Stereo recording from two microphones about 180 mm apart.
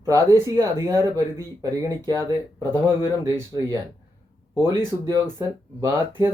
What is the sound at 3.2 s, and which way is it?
Speech, 15° right (ahead or behind).